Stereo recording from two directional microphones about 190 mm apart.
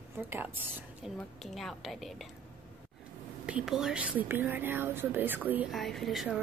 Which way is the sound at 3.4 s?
5° right (ahead or behind).